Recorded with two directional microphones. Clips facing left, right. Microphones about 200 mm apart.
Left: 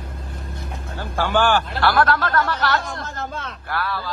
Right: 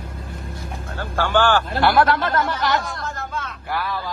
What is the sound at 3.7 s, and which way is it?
Speech, 15° right (ahead or behind).